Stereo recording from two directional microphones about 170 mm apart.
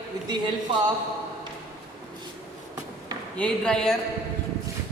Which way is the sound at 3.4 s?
5° left (ahead or behind).